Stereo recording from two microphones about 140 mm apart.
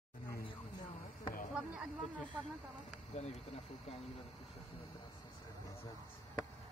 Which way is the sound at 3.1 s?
50° left (ahead or behind).